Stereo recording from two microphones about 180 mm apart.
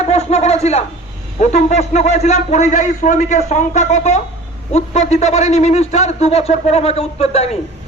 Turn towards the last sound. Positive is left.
turn(degrees=35)  # may be behind; listen again after turning